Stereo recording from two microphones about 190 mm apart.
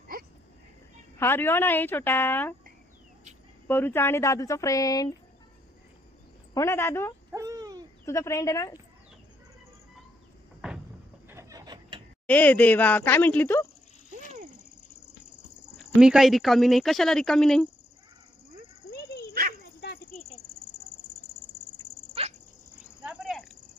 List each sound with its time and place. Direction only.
0.1 s a sound: 50° right (ahead or behind)
1.2 s speech: 10° left (ahead or behind)
3.7 s speech: 10° left (ahead or behind)
6.5 s speech: 15° left (ahead or behind)
7.3 s a sound: 15° right (ahead or behind)
8.0 s speech: 15° left (ahead or behind)
10.6 s door: 5° right (ahead or behind)
11.3 s a sound: 15° right (ahead or behind)
12.3 s speech: 10° left (ahead or behind)
16.0 s speech: 5° right (ahead or behind)
19.3 s dog: 50° right (ahead or behind)
23.0 s a sound: centre (ahead or behind)